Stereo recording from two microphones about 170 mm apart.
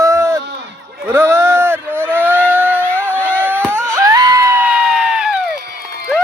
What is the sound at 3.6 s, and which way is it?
Crowd, 15° right (ahead or behind).